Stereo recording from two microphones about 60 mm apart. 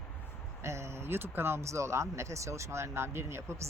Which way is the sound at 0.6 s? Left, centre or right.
Right.